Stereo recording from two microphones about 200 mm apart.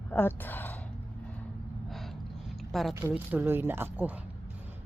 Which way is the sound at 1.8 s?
Centre (ahead or behind).